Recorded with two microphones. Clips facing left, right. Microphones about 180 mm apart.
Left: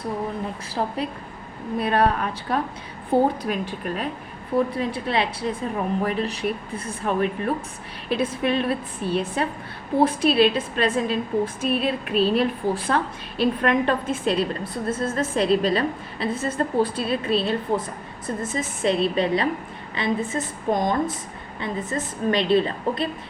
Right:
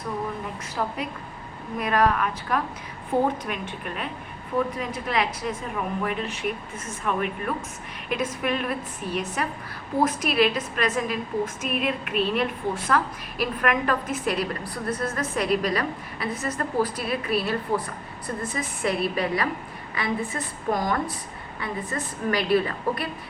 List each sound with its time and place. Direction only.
0.7 s a woman's voice: 30° left (ahead or behind)